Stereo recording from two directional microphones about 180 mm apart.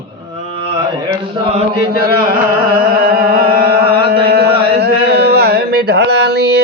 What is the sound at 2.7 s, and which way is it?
Chant, 55° right (ahead or behind).